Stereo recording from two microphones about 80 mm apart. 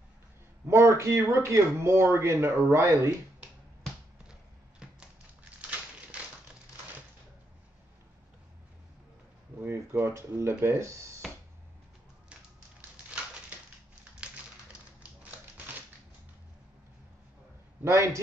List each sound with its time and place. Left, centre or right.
0.7 s speech: right
4.3 s a sound: centre
5.6 s crushing: centre
9.6 s speech: right
17.8 s speech: right